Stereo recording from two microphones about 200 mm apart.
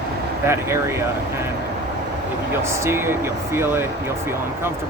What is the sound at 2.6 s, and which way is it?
Speech, 15° right (ahead or behind).